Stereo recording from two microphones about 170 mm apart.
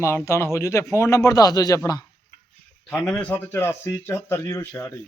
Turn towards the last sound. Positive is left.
turn(degrees=15)  # may be behind; listen again after turning